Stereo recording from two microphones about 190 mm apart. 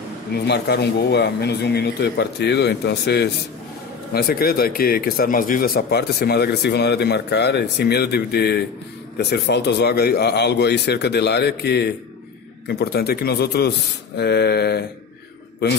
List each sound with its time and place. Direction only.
0.5 s speech: 60° left (ahead or behind)